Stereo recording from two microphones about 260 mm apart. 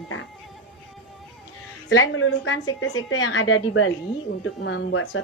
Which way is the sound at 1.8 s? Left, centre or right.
Left.